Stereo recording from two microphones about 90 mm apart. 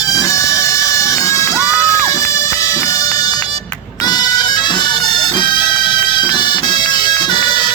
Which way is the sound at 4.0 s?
50° left (ahead or behind).